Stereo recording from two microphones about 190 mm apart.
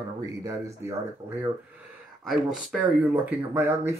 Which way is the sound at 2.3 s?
Centre (ahead or behind).